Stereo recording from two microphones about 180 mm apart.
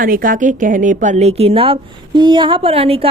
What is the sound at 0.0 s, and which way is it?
Speech, 50° right (ahead or behind).